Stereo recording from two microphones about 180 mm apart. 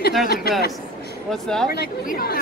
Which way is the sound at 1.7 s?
55° left (ahead or behind).